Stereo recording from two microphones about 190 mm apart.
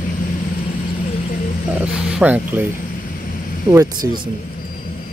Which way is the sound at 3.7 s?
20° right (ahead or behind).